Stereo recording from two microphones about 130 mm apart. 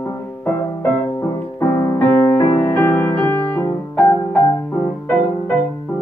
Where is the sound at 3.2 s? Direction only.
20° left (ahead or behind).